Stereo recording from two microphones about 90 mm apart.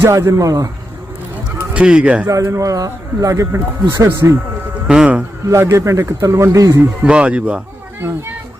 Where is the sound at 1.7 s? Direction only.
10° right (ahead or behind).